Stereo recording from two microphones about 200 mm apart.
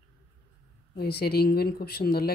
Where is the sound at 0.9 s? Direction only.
55° left (ahead or behind).